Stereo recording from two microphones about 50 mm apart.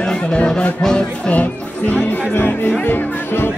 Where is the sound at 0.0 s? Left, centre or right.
Left.